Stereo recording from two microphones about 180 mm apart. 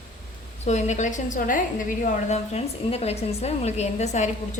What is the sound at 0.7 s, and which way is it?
Speech, 40° left (ahead or behind).